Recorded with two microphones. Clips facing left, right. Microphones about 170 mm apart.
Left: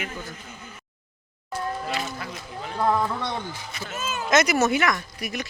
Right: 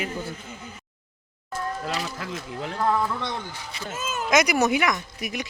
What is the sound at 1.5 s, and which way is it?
Music, 40° right (ahead or behind).